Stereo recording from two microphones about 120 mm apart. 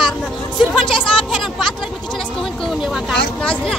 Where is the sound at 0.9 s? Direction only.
45° left (ahead or behind).